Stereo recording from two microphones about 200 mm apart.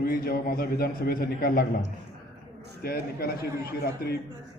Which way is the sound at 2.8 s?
50° left (ahead or behind).